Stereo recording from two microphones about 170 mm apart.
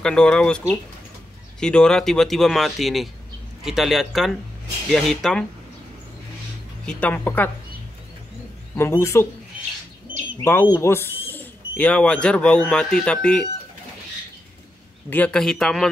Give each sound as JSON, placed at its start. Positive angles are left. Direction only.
{"t": 0.0, "sound": "speech", "side_deg": 5}
{"t": 6.9, "sound": "speech", "side_deg": 10}
{"t": 8.7, "sound": "speech", "side_deg": 15}
{"t": 10.4, "sound": "speech", "side_deg": 15}
{"t": 15.0, "sound": "speech", "side_deg": 10}